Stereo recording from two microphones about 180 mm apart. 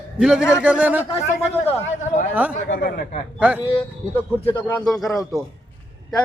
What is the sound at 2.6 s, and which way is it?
Speech, 55° left (ahead or behind).